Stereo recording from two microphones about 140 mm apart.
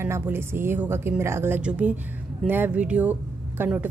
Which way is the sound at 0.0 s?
15° right (ahead or behind).